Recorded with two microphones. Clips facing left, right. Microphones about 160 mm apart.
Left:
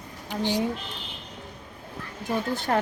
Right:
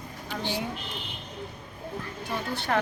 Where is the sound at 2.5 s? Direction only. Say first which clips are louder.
Left 1 dB; 45° left (ahead or behind).